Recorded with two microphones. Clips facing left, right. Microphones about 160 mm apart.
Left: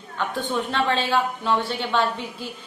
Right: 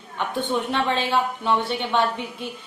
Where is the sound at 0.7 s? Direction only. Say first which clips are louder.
Even; 15° right (ahead or behind).